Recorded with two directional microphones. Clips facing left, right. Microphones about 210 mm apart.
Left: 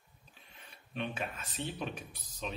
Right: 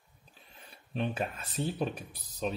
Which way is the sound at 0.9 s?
35° right (ahead or behind).